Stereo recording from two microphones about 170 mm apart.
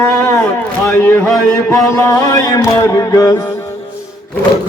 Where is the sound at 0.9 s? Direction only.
15° left (ahead or behind).